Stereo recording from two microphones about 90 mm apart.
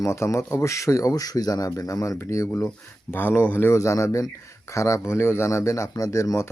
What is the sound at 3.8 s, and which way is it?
Speech, 35° left (ahead or behind).